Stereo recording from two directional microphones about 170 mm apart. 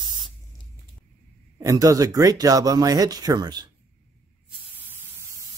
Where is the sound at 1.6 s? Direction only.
20° right (ahead or behind).